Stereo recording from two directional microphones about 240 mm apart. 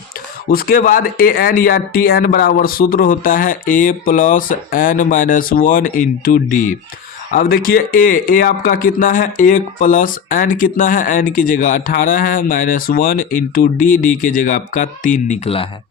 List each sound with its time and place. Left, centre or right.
0.5 s speech: left